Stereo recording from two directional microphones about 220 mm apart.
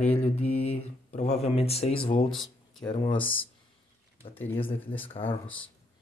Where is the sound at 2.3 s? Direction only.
Centre (ahead or behind).